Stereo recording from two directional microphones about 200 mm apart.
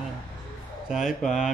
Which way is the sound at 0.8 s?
5° right (ahead or behind).